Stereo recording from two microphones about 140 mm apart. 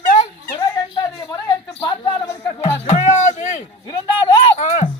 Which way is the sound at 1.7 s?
35° left (ahead or behind).